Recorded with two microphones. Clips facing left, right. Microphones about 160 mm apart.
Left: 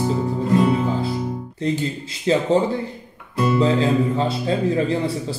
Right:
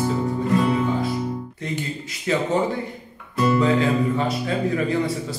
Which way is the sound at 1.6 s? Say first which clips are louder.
Left 8 dB; 30° left (ahead or behind).